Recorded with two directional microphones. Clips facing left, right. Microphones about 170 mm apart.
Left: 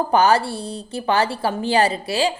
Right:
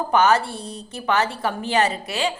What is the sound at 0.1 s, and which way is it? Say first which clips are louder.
A woman's voice: even; 35° left (ahead or behind).